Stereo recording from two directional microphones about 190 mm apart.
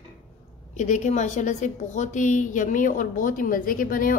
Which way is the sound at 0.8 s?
40° left (ahead or behind).